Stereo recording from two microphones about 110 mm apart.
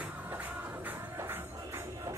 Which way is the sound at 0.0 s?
15° right (ahead or behind).